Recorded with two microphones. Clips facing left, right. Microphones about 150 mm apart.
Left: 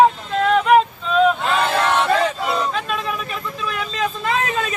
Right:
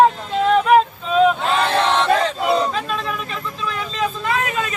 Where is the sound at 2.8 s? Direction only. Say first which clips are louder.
Even; 5° left (ahead or behind).